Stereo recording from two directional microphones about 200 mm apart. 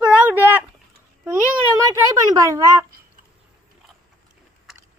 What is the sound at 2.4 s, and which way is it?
Speech, 15° right (ahead or behind).